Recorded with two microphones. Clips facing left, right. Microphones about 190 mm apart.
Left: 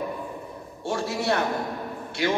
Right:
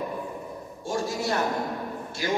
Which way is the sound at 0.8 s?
65° left (ahead or behind).